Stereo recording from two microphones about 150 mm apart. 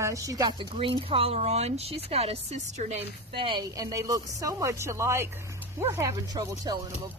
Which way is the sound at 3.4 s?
35° right (ahead or behind).